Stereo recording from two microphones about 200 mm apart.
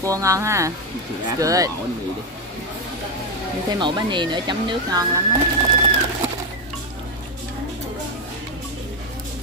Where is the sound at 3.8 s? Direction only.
25° right (ahead or behind).